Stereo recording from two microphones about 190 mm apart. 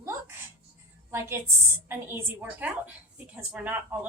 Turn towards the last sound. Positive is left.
turn(degrees=-10)  # may be behind; listen again after turning